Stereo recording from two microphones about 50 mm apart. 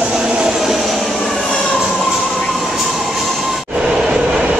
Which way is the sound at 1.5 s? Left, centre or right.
Centre.